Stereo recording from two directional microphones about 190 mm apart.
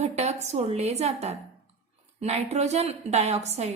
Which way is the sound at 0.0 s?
35° right (ahead or behind).